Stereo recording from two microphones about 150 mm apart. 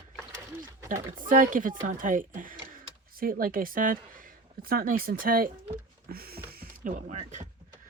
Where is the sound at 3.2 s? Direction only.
70° right (ahead or behind).